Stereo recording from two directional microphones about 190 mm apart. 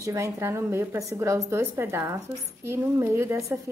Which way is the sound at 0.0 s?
15° right (ahead or behind).